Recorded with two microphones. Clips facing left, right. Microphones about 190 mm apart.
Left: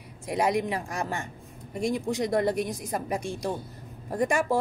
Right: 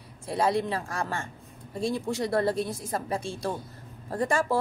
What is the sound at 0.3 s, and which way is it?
Speech, 15° left (ahead or behind).